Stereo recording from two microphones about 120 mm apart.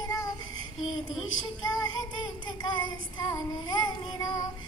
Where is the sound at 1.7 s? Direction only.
35° left (ahead or behind).